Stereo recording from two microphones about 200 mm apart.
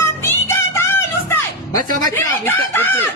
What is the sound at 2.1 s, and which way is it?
Speech, 10° left (ahead or behind).